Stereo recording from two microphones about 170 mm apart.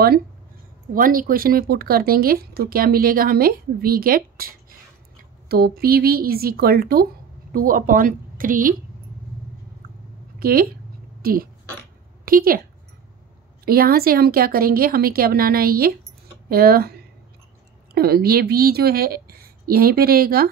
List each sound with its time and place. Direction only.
0.9 s a woman's voice: 55° right (ahead or behind)
10.4 s speech: 60° right (ahead or behind)
13.7 s a woman's voice: 60° right (ahead or behind)